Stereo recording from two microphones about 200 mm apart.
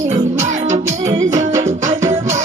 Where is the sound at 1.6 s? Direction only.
35° right (ahead or behind).